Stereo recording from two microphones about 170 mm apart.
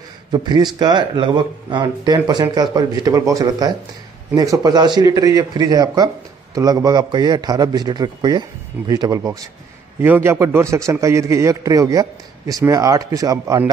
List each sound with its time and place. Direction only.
0.3 s a man's voice: 25° right (ahead or behind)